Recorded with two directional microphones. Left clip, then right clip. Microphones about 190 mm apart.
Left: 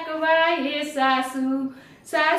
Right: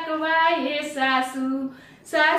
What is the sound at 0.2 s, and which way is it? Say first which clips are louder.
Child singing: left 1 dB; 15° left (ahead or behind).